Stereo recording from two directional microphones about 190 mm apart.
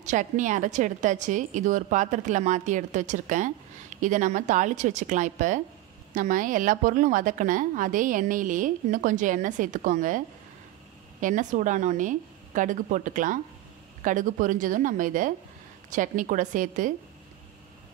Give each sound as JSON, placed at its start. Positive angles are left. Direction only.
{"t": 0.0, "sound": "a woman's voice", "side_deg": -40}